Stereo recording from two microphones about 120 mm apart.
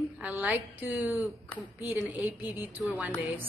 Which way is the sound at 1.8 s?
15° right (ahead or behind).